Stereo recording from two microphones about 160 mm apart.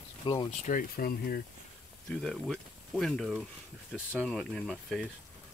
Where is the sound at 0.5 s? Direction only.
55° left (ahead or behind); by 1.4 s 70° left (ahead or behind).